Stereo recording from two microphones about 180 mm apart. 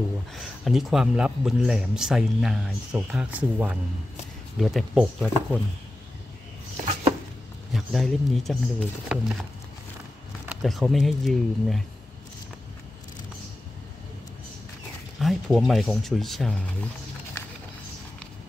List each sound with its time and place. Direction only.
0.4 s speech: centre (ahead or behind)
6.8 s a sound: 35° right (ahead or behind)
7.7 s speech: centre (ahead or behind)
10.4 s speech: 5° right (ahead or behind)
15.1 s speech: centre (ahead or behind)